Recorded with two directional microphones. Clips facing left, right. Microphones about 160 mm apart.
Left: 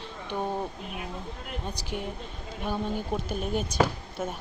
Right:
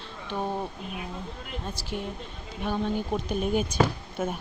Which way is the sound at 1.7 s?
15° left (ahead or behind).